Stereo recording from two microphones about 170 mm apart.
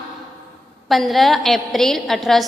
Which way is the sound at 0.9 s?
Centre (ahead or behind).